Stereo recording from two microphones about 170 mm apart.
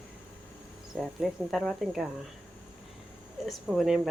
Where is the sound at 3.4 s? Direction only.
Centre (ahead or behind).